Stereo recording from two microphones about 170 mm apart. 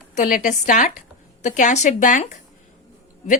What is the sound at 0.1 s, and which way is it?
A woman's voice, 50° left (ahead or behind).